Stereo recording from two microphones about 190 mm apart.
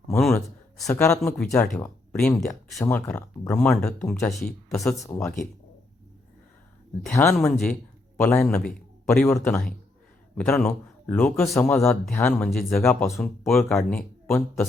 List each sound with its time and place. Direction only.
0.2 s speech: centre (ahead or behind)
0.9 s speech: 15° left (ahead or behind)
1.4 s speech: 5° left (ahead or behind)
5.0 s speech: 15° left (ahead or behind)
7.1 s speech: 10° left (ahead or behind)
11.5 s speech: 15° left (ahead or behind)
13.1 s speech: centre (ahead or behind)